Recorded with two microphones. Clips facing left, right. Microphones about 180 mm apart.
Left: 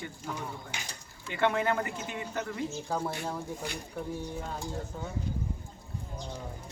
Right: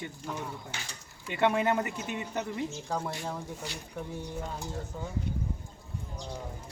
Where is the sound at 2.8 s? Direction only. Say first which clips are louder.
Left 3 dB; 5° left (ahead or behind).